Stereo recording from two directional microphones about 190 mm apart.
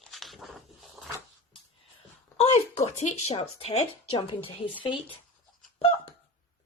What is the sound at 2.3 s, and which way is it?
Speech, 35° left (ahead or behind).